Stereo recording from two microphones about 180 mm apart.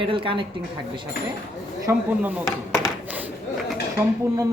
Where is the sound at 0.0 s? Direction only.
30° right (ahead or behind).